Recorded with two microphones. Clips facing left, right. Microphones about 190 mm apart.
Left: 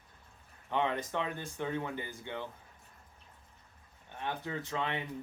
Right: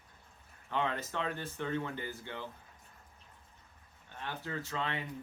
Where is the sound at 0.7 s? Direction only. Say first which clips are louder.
Left 3 dB; 15° left (ahead or behind).